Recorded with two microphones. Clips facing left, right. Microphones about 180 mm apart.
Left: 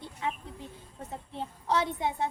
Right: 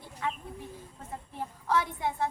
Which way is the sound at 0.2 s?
20° left (ahead or behind).